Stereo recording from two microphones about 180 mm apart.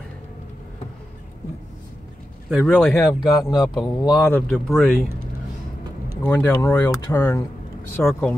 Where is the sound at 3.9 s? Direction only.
20° left (ahead or behind).